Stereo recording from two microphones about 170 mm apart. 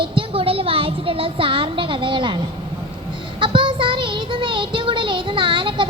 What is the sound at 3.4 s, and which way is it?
Child singing, 30° right (ahead or behind).